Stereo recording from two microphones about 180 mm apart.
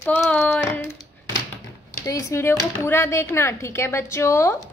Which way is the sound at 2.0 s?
15° left (ahead or behind).